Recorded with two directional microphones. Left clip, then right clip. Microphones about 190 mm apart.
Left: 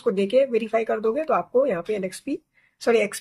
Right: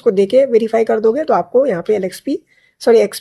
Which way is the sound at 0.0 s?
35° right (ahead or behind).